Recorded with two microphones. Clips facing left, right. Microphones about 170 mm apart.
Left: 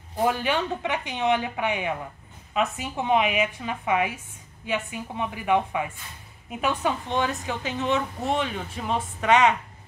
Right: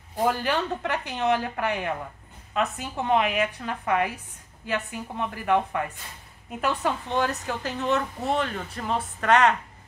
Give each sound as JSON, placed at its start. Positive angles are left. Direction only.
{"t": 0.2, "sound": "a woman's voice", "side_deg": 0}